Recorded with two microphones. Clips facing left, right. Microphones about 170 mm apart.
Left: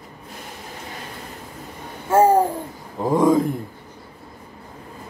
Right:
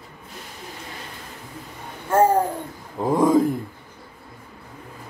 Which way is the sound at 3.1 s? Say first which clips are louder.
Left 1 dB; centre (ahead or behind).